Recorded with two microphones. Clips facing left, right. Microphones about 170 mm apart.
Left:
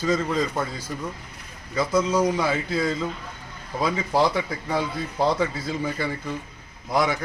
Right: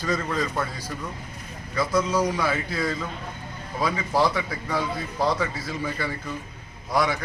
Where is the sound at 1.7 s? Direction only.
20° left (ahead or behind).